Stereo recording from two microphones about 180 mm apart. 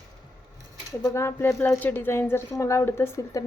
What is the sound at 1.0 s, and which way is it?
Speech, 15° left (ahead or behind).